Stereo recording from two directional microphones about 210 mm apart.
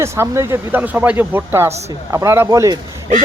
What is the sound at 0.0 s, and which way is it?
Speech, 15° right (ahead or behind).